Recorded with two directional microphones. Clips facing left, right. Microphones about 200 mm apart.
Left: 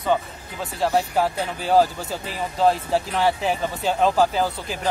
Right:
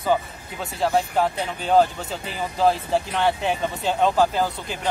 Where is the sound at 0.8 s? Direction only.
5° left (ahead or behind).